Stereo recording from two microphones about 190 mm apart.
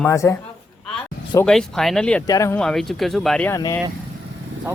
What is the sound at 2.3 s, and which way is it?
Speech, 15° left (ahead or behind).